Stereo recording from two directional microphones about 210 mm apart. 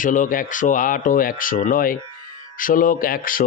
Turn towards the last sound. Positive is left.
turn(degrees=40)  # may be behind; listen again after turning